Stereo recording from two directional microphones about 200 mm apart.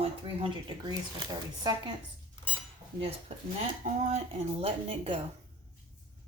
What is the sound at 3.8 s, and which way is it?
Speech, 35° right (ahead or behind).